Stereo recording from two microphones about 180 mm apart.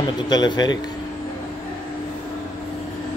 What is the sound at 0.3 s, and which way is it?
Speech, 25° left (ahead or behind).